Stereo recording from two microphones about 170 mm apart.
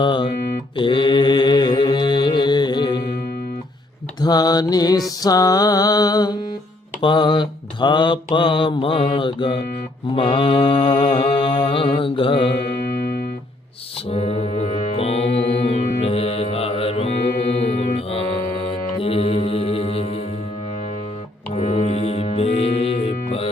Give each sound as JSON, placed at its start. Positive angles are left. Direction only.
{"t": 0.0, "sound": "a sound", "side_deg": 30}
{"t": 0.8, "sound": "mantra", "side_deg": 30}
{"t": 4.2, "sound": "mantra", "side_deg": 25}
{"t": 12.5, "sound": "music", "side_deg": 70}
{"t": 14.1, "sound": "music", "side_deg": 35}
{"t": 18.9, "sound": "music", "side_deg": 35}
{"t": 21.5, "sound": "music", "side_deg": 40}